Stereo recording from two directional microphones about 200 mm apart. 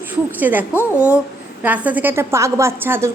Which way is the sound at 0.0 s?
10° right (ahead or behind).